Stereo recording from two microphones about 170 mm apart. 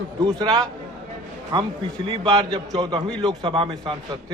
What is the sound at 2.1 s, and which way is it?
A man's voice, 30° right (ahead or behind).